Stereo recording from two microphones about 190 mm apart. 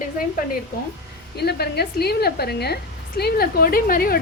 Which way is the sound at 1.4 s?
55° left (ahead or behind).